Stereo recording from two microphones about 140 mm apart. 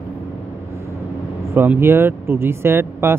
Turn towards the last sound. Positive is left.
turn(degrees=-15)  # may be behind; listen again after turning